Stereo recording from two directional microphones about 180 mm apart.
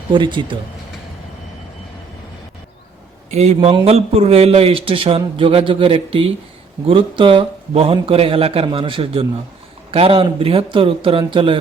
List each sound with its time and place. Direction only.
0.1 s a man's voice: 25° right (ahead or behind)
3.2 s a man's voice: 35° right (ahead or behind)